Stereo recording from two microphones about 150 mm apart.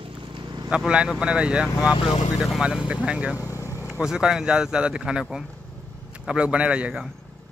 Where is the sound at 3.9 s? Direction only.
5° right (ahead or behind).